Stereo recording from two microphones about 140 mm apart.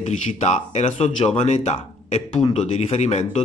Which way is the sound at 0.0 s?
55° left (ahead or behind).